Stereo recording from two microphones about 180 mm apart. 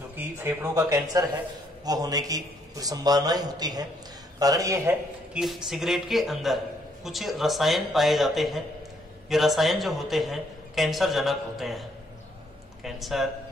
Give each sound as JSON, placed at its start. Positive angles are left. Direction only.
{"t": 0.1, "sound": "a man's voice", "side_deg": -10}
{"t": 5.4, "sound": "a man's voice", "side_deg": 0}
{"t": 12.8, "sound": "a man's voice", "side_deg": 0}